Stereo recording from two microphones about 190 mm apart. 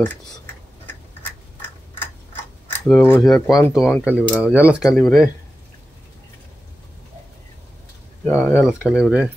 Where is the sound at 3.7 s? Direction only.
Centre (ahead or behind).